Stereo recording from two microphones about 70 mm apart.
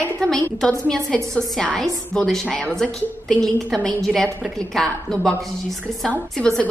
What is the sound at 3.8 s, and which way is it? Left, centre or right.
A woman's voice, centre.